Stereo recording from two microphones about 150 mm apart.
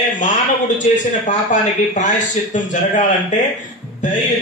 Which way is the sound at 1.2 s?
55° left (ahead or behind).